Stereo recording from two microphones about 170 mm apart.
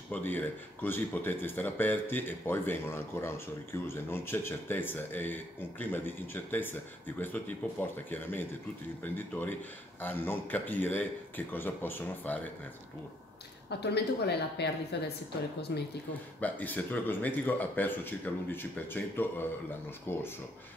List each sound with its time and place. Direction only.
0.1 s speech: 10° left (ahead or behind)
13.7 s a woman's voice: 80° left
16.3 s speech: 10° left (ahead or behind)